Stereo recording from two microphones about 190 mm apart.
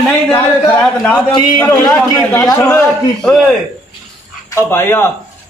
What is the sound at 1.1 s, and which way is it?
A man's voice, 25° left (ahead or behind).